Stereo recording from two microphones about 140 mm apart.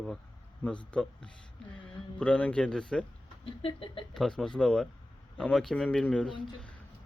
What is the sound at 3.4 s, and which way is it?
Speech, 40° left (ahead or behind).